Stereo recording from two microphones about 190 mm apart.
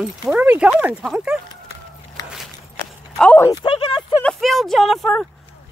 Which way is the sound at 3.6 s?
25° left (ahead or behind).